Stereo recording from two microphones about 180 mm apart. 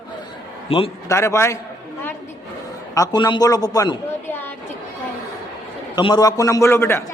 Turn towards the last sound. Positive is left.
turn(degrees=15)  # may be behind; listen again after turning